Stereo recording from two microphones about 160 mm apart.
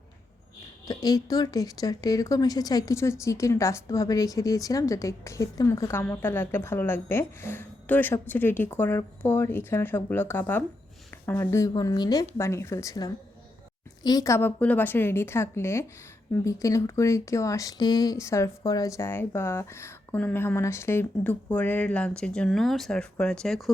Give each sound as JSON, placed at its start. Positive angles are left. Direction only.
{"t": 0.9, "sound": "a woman's voice", "side_deg": 25}